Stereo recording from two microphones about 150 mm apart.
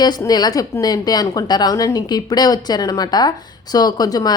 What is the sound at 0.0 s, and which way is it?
A woman's voice, 25° left (ahead or behind).